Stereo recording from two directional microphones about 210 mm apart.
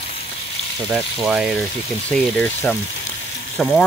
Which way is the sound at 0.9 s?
5° right (ahead or behind).